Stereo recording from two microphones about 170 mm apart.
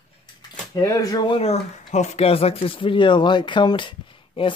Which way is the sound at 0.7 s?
20° left (ahead or behind).